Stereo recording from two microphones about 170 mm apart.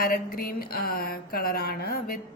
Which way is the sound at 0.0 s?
60° left (ahead or behind).